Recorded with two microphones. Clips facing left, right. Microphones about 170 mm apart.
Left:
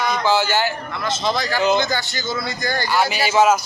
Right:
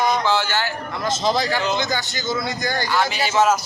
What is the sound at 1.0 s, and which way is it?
Speech, 40° right (ahead or behind).